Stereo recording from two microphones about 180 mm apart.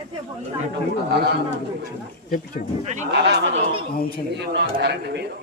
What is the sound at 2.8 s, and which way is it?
Speech, 40° right (ahead or behind).